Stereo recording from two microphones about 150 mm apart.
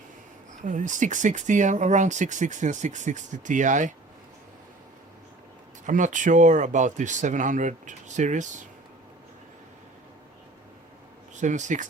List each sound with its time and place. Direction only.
0.6 s speech: 55° right (ahead or behind)
5.8 s speech: 55° right (ahead or behind)
11.3 s speech: 55° right (ahead or behind)